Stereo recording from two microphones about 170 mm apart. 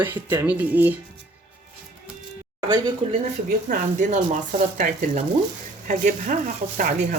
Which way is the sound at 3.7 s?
50° right (ahead or behind).